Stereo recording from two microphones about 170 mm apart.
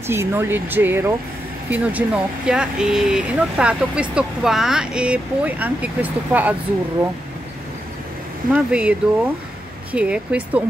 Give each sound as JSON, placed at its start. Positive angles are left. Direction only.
{"t": 0.0, "sound": "speech", "side_deg": -15}
{"t": 8.5, "sound": "speech", "side_deg": -5}